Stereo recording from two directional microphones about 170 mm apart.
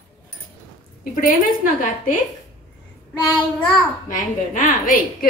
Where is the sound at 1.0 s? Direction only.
55° left (ahead or behind).